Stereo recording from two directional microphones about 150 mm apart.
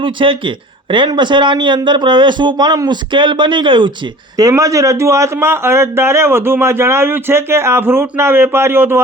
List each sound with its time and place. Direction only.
0.0 s a man's voice: 35° right (ahead or behind); by 9.0 s 15° right (ahead or behind)